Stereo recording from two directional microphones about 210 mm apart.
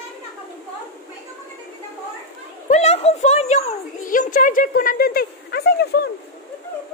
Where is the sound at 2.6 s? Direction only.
35° left (ahead or behind); by 6.1 s 50° left (ahead or behind).